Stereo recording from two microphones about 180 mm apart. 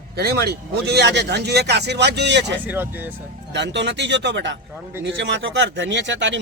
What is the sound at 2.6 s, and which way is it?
Speech, 10° right (ahead or behind).